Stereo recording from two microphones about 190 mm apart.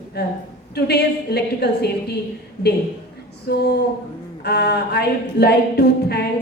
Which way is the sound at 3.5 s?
60° left (ahead or behind).